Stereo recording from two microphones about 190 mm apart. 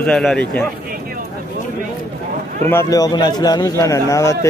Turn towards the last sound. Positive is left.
turn(degrees=15)  # may be behind; listen again after turning